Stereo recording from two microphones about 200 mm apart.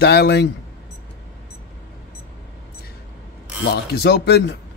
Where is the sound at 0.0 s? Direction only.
55° left (ahead or behind).